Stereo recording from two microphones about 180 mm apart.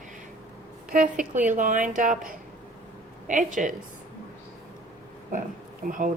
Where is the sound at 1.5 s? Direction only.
45° right (ahead or behind).